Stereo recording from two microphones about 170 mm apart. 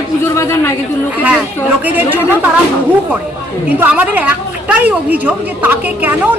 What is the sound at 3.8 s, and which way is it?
A woman's voice, 10° right (ahead or behind).